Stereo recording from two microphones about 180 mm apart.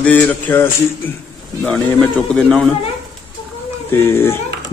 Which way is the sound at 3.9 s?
15° left (ahead or behind).